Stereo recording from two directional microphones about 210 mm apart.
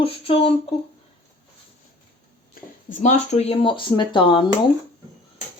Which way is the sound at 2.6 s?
45° left (ahead or behind).